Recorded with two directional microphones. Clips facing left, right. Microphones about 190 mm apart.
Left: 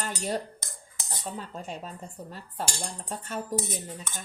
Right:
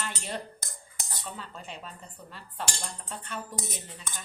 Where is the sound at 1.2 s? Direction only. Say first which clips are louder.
Left 6 dB; 45° left (ahead or behind).